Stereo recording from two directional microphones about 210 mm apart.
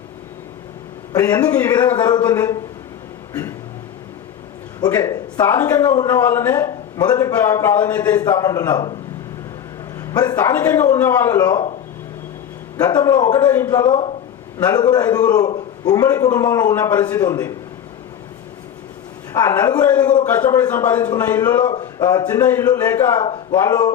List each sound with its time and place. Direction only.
1.1 s speech: 15° left (ahead or behind)
4.8 s speech: 15° left (ahead or behind)
10.1 s speech: 15° left (ahead or behind)
12.7 s a man's voice: 20° left (ahead or behind)
19.3 s a man's voice: 15° left (ahead or behind)
20.2 s a man's voice: 10° left (ahead or behind)